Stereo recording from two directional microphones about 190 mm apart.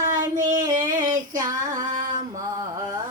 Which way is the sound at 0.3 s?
40° right (ahead or behind).